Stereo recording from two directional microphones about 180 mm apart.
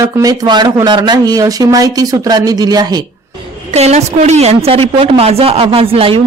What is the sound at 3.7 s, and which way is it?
A woman's voice, 35° right (ahead or behind).